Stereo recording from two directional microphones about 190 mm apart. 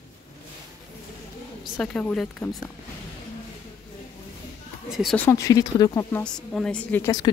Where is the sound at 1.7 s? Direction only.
5° left (ahead or behind).